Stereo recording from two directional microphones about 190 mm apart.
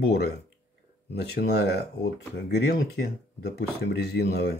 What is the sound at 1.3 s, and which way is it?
Speech, 55° left (ahead or behind).